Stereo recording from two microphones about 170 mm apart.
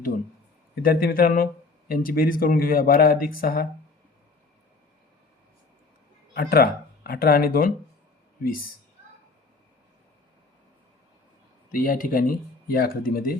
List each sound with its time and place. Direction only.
0.8 s speech: 60° left (ahead or behind)
6.3 s speech: 60° left (ahead or behind)
11.7 s speech: 55° left (ahead or behind)